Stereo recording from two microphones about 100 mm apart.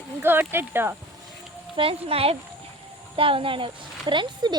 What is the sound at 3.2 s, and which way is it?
Speech, 60° right (ahead or behind).